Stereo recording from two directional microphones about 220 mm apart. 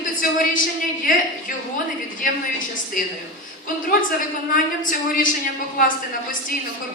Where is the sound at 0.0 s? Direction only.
35° left (ahead or behind).